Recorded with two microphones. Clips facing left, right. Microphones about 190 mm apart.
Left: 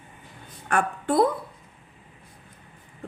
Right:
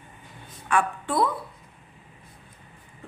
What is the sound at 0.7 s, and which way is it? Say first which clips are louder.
Speech: left 1 dB; 45° left (ahead or behind).